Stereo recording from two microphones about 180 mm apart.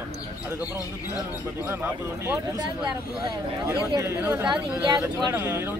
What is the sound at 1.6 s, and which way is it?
Speech, 10° right (ahead or behind).